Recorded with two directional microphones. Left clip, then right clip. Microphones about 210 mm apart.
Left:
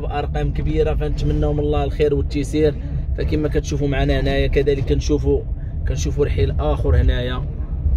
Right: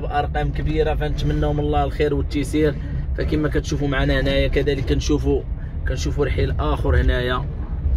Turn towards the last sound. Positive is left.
turn(degrees=15)  # may be behind; listen again after turning